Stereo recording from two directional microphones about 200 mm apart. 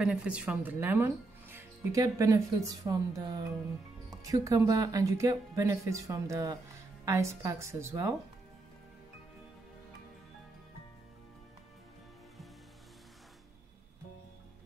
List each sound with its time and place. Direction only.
0.0 s speech: 5° right (ahead or behind)